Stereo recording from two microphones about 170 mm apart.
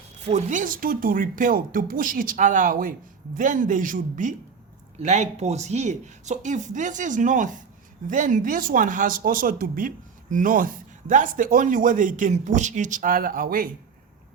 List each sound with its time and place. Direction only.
0.3 s speech: 45° right (ahead or behind)